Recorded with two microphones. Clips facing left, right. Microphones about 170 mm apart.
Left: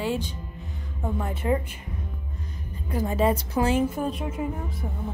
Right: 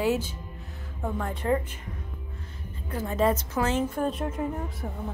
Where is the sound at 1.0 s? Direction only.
5° left (ahead or behind).